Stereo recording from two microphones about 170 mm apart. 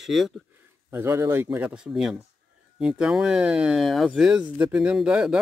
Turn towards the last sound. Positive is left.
turn(degrees=-5)  # may be behind; listen again after turning